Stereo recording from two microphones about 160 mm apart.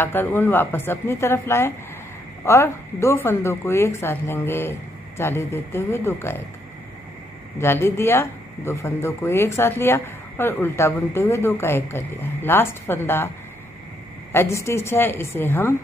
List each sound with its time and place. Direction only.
0.0 s speech: 15° left (ahead or behind)
7.5 s speech: 15° left (ahead or behind)
14.3 s speech: 15° left (ahead or behind)